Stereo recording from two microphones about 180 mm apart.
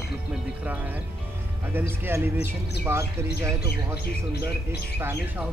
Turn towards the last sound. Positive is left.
turn(degrees=-10)  # may be behind; listen again after turning